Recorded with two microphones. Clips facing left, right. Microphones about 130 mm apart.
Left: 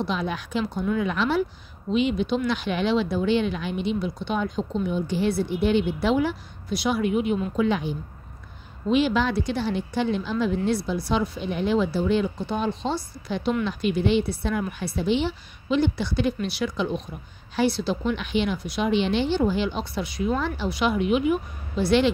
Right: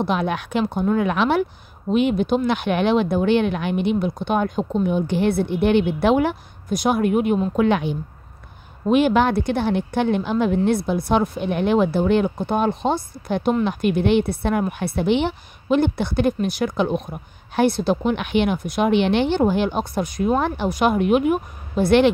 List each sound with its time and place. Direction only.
0.0 s a woman's voice: 60° right (ahead or behind)
8.8 s a woman's voice: 55° right (ahead or behind)